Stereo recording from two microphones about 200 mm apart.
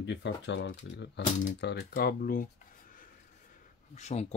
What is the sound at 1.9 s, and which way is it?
Speech, 45° left (ahead or behind).